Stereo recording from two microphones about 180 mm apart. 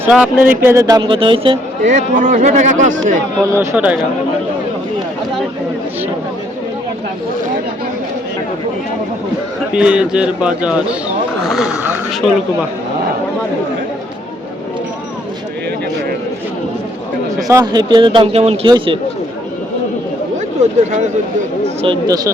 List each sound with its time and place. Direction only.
0.0 s speech: 10° right (ahead or behind); by 1.5 s 30° right (ahead or behind)
1.8 s speech: 45° right (ahead or behind)
3.5 s speech: 15° right (ahead or behind)
9.7 s a man's voice: 5° right (ahead or behind)
17.5 s speech: 20° right (ahead or behind)
21.6 s speech: 35° right (ahead or behind)
22.0 s speech: 20° right (ahead or behind)